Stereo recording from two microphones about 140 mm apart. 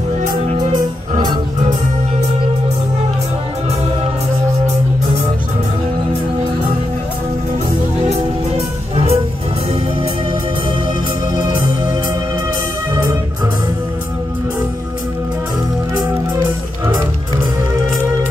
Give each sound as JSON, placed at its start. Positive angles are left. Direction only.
{"t": 0.2, "sound": "music", "side_deg": -70}
{"t": 8.5, "sound": "music", "side_deg": -45}
{"t": 11.3, "sound": "music", "side_deg": -30}